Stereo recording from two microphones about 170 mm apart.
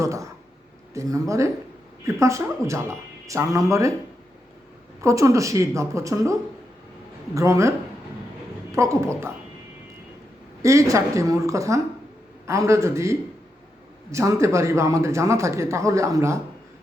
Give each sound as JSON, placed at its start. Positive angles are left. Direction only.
{"t": 0.0, "sound": "a woman's voice", "side_deg": -20}
{"t": 4.9, "sound": "speech", "side_deg": -20}
{"t": 8.7, "sound": "speech", "side_deg": -15}
{"t": 10.6, "sound": "a woman's voice", "side_deg": -20}